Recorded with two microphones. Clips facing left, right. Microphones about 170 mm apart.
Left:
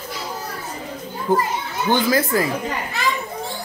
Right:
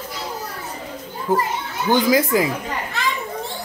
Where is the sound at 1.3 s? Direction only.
5° right (ahead or behind).